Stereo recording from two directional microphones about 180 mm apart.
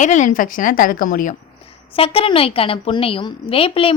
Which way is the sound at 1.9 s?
30° left (ahead or behind).